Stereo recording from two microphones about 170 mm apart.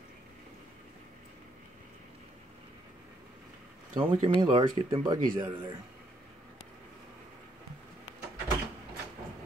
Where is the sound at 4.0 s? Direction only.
30° right (ahead or behind).